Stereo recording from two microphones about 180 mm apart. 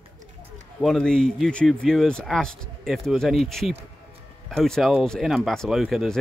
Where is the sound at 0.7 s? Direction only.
Centre (ahead or behind).